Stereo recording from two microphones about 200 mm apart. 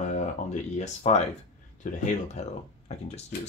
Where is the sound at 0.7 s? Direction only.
35° left (ahead or behind).